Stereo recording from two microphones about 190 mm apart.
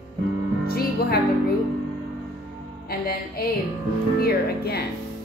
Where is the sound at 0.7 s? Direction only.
55° left (ahead or behind).